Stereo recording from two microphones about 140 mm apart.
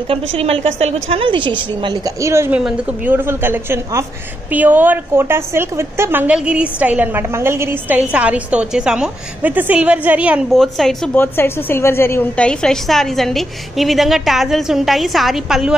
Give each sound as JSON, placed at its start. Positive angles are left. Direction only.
{"t": 0.1, "sound": "a woman's voice", "side_deg": -45}
{"t": 2.2, "sound": "a woman's voice", "side_deg": -20}
{"t": 10.5, "sound": "a woman's voice", "side_deg": 0}
{"t": 11.1, "sound": "a woman's voice", "side_deg": 15}